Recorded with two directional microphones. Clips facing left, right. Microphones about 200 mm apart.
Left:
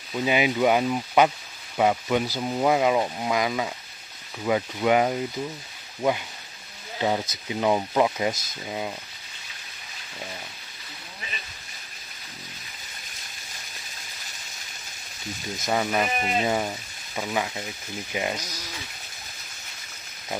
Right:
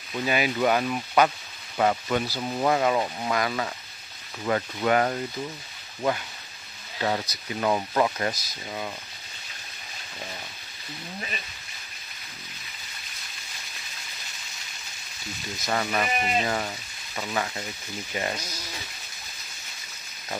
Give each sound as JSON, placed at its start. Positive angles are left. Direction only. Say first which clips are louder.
{"t": 0.1, "sound": "speech", "louder": "left 3 dB", "side_deg": 15}
{"t": 7.0, "sound": "speech", "louder": "left 2 dB", "side_deg": 15}
{"t": 15.5, "sound": "speech", "louder": "left 2 dB", "side_deg": 20}